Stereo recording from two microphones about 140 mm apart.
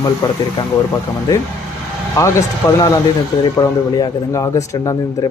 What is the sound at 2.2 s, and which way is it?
Speech, 25° left (ahead or behind).